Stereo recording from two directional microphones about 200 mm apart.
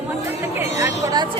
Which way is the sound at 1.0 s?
20° right (ahead or behind).